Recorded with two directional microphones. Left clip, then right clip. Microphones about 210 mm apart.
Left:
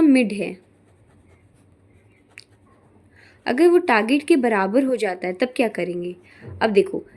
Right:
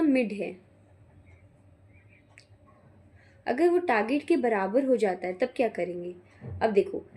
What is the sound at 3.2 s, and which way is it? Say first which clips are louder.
A woman's voice: left 8 dB; 45° left (ahead or behind).